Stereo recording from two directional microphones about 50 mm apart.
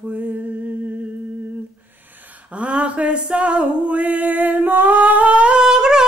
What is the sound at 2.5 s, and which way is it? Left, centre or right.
Music, right.